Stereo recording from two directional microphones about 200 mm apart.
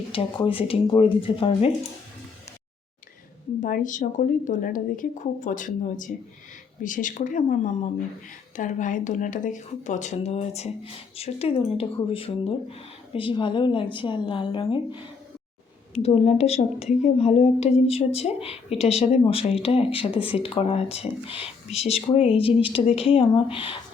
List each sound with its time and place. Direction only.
0.4 s speech: 25° left (ahead or behind)
3.6 s speech: 40° left (ahead or behind); by 15.0 s 25° left (ahead or behind)
16.0 s speech: 30° left (ahead or behind)